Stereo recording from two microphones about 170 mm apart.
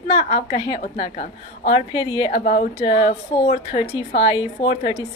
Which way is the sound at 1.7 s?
30° left (ahead or behind).